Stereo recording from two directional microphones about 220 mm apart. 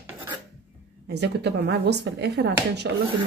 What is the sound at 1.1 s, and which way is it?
A woman's voice, 50° right (ahead or behind).